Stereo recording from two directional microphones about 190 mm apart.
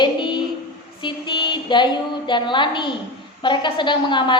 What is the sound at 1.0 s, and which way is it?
A woman's voice, 25° left (ahead or behind).